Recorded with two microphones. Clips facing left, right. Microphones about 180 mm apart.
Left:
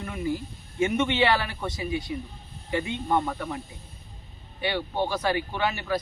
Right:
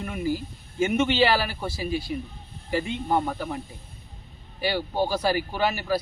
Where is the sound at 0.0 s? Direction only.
5° right (ahead or behind).